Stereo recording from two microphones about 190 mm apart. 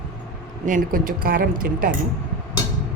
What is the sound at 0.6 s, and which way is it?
A woman's voice, 45° right (ahead or behind).